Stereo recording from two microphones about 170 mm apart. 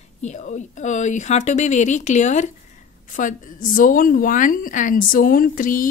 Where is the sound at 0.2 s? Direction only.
45° left (ahead or behind).